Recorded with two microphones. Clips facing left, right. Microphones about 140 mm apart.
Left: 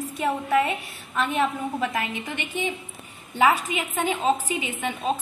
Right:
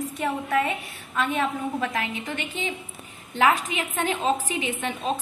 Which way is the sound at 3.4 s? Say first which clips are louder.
Left 1 dB; 10° left (ahead or behind).